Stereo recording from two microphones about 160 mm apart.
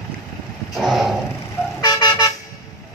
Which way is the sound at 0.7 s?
Centre (ahead or behind).